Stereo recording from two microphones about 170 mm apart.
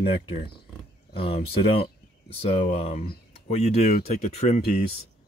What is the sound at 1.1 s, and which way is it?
Speech, 35° left (ahead or behind).